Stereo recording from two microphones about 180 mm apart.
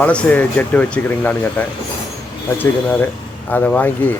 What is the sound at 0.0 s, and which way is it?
Speech, 5° left (ahead or behind).